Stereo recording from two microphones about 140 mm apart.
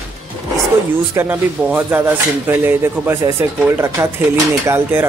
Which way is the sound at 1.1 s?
15° right (ahead or behind).